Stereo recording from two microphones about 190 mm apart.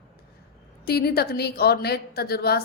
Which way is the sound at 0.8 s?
55° left (ahead or behind).